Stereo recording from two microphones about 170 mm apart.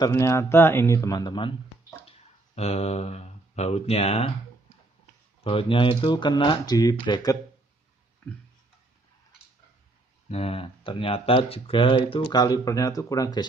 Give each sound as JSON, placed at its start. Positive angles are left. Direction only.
{"t": 0.0, "sound": "speech", "side_deg": 15}
{"t": 2.0, "sound": "speech", "side_deg": 40}
{"t": 5.4, "sound": "speech", "side_deg": 35}
{"t": 10.2, "sound": "speech", "side_deg": 35}